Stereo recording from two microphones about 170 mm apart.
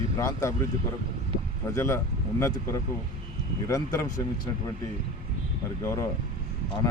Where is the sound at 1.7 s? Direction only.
15° left (ahead or behind).